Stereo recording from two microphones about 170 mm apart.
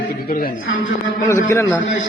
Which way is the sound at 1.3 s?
15° left (ahead or behind).